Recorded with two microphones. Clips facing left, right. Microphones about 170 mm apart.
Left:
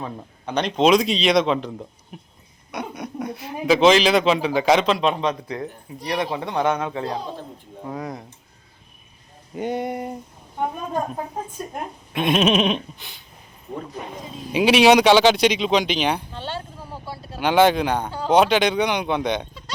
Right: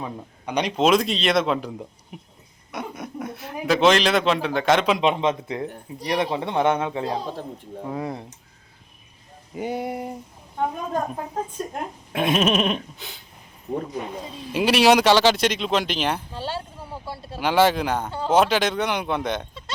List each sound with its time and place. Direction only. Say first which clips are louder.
0.0 s speech: even; 10° right (ahead or behind)
2.7 s speech: left 2 dB; centre (ahead or behind)
4.9 s speech: right 1 dB; 20° right (ahead or behind)
9.6 s speech: left 2 dB; 5° right (ahead or behind)
12.1 s speech: left 2 dB; 5° right (ahead or behind)
14.3 s speech: left 1 dB; 45° left (ahead or behind)
14.5 s speech: left 3 dB; centre (ahead or behind)